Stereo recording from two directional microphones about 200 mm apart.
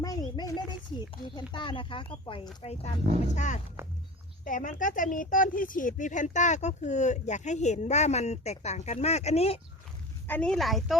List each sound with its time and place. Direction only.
0.0 s speech: 20° left (ahead or behind)
10.2 s a woman's voice: 5° left (ahead or behind)